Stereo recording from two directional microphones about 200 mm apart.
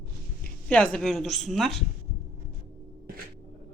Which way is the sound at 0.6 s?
5° left (ahead or behind).